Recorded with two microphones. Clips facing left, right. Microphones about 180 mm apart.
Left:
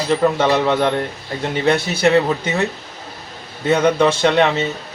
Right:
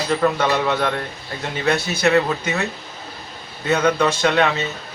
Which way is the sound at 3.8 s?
25° left (ahead or behind).